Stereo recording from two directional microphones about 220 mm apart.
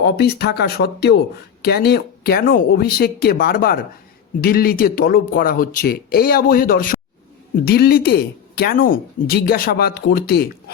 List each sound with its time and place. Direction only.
0.0 s speech: 50° left (ahead or behind)